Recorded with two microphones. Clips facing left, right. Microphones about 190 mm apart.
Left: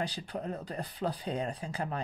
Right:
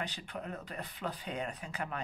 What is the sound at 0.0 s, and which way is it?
Speech, 35° left (ahead or behind).